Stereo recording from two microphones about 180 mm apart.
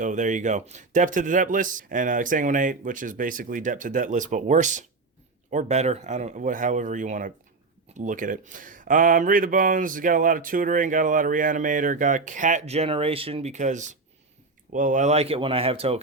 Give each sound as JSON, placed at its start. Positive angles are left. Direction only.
{"t": 0.0, "sound": "speech", "side_deg": -45}